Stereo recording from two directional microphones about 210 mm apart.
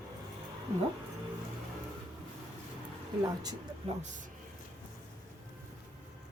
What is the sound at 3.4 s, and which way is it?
Speech, 20° right (ahead or behind).